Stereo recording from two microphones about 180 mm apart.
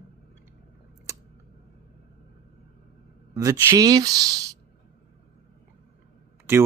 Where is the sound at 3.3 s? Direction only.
20° right (ahead or behind).